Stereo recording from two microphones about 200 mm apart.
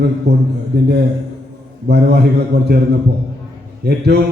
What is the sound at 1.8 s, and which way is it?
A man's voice, 55° right (ahead or behind).